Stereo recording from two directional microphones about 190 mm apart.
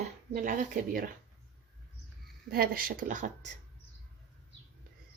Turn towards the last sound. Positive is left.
turn(degrees=-40)  # may be behind; listen again after turning